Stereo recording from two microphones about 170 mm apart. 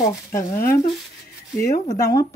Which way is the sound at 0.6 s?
60° left (ahead or behind).